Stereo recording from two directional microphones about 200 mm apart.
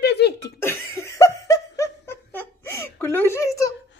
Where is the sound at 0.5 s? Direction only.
10° left (ahead or behind).